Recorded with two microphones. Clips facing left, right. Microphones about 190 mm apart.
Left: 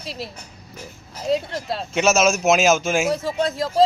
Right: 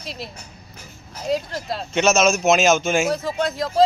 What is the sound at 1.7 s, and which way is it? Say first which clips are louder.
A man's voice: even; centre (ahead or behind).